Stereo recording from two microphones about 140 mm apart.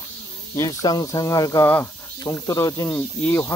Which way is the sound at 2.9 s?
10° left (ahead or behind).